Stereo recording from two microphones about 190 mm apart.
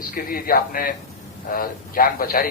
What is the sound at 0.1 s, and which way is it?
A man's voice, 50° left (ahead or behind).